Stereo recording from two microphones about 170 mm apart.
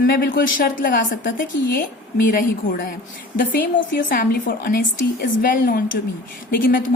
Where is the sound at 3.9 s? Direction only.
55° left (ahead or behind).